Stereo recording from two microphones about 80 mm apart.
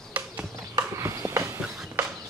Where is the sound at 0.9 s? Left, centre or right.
Right.